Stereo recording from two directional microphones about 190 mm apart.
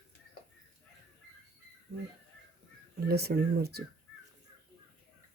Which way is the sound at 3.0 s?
55° right (ahead or behind).